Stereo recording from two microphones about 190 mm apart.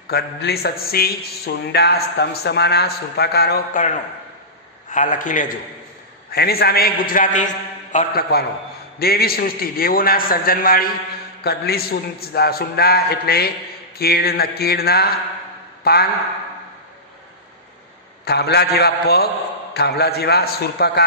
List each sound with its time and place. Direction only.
0.1 s a man's voice: 55° left (ahead or behind)
6.3 s a man's voice: 55° left (ahead or behind)
18.2 s a man's voice: 60° left (ahead or behind)